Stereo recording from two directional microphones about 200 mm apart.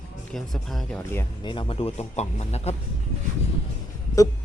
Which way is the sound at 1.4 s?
25° left (ahead or behind).